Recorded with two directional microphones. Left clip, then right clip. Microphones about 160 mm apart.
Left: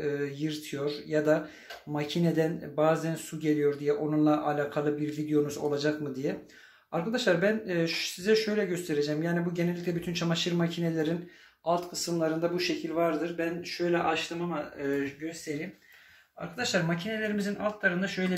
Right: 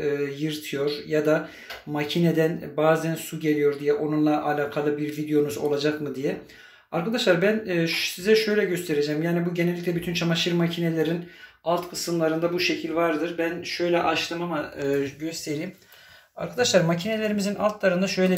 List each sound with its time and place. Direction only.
0.0 s speech: 5° right (ahead or behind)
16.3 s speech: 25° right (ahead or behind)